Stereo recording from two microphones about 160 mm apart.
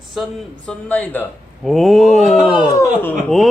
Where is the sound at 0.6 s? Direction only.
10° left (ahead or behind).